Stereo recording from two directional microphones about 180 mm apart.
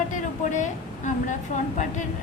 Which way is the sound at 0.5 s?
45° left (ahead or behind).